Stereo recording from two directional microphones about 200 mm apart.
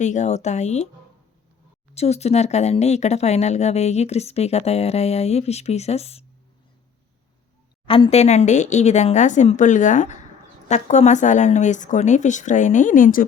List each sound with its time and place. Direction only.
0.0 s speech: 35° left (ahead or behind)
2.0 s speech: 30° left (ahead or behind)
7.9 s speech: 25° left (ahead or behind); by 13.2 s 40° left (ahead or behind)